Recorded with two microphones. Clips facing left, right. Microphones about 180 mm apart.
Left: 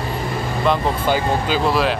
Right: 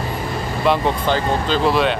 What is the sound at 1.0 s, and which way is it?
Speech, 10° left (ahead or behind).